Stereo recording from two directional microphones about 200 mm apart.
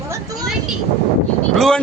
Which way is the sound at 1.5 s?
Centre (ahead or behind).